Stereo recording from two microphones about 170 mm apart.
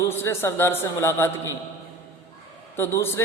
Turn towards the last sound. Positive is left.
turn(degrees=15)  # may be behind; listen again after turning